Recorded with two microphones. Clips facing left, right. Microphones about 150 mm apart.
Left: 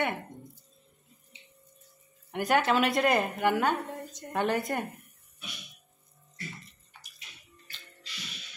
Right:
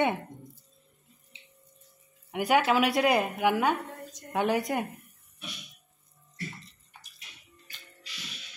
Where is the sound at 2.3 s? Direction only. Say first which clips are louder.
Right 1 dB; 10° right (ahead or behind).